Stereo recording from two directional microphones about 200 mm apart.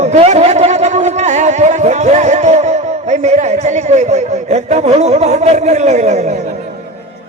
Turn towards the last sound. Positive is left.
turn(degrees=-35)  # may be behind; listen again after turning